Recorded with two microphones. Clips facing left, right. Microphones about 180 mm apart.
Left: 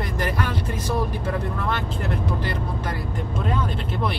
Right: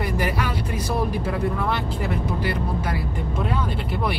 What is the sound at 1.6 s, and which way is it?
Speech, 5° right (ahead or behind).